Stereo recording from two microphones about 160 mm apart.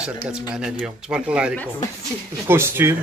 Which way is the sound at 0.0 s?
5° right (ahead or behind).